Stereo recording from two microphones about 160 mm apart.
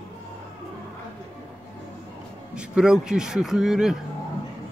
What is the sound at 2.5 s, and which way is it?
Speech, 5° right (ahead or behind).